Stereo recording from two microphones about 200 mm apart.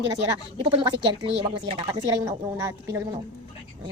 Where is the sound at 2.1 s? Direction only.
15° right (ahead or behind).